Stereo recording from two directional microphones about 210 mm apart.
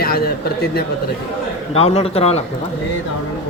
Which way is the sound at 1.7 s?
30° left (ahead or behind).